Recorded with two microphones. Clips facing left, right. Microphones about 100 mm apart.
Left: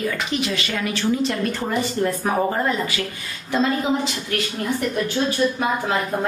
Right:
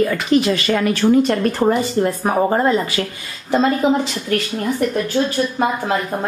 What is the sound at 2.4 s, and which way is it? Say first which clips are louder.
Speech: right 6 dB; 35° right (ahead or behind).